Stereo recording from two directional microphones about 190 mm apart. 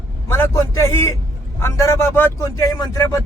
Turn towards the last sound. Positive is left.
turn(degrees=15)  # may be behind; listen again after turning